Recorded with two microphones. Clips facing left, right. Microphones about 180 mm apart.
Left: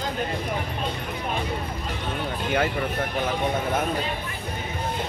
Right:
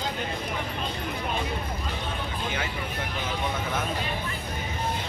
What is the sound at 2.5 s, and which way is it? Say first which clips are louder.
Speech: left 8 dB; 55° left (ahead or behind).